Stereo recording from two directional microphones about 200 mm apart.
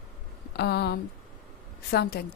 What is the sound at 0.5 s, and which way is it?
Speech, 55° left (ahead or behind).